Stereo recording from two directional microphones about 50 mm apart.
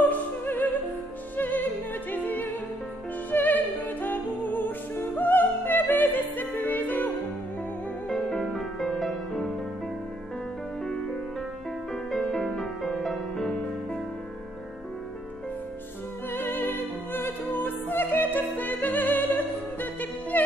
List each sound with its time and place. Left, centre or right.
0.1 s music: left
8.1 s music: centre
12.2 s music: centre
16.3 s music: left